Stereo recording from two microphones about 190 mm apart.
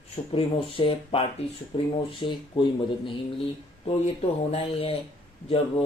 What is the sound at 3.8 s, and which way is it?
Speech, 30° left (ahead or behind).